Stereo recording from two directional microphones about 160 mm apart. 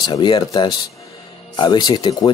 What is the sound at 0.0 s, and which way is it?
Speech, 25° left (ahead or behind).